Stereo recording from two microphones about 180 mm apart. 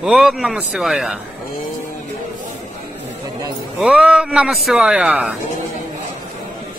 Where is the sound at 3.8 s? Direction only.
5° right (ahead or behind).